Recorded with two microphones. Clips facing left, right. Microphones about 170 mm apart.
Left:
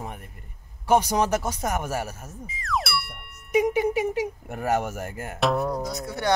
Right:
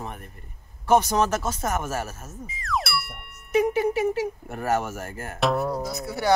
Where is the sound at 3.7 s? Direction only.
15° left (ahead or behind).